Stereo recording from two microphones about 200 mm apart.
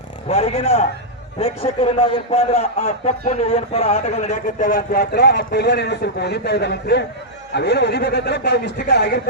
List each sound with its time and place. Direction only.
0.3 s a man's voice: 30° left (ahead or behind); by 9.2 s 55° left (ahead or behind)